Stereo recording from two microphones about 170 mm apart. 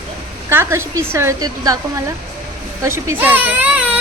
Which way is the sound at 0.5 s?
15° right (ahead or behind).